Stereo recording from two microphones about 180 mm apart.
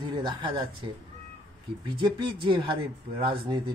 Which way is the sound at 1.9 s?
25° right (ahead or behind).